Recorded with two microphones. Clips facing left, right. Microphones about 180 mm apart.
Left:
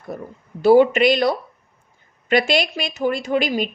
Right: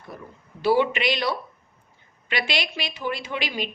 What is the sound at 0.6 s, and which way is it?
A woman's voice, 45° left (ahead or behind).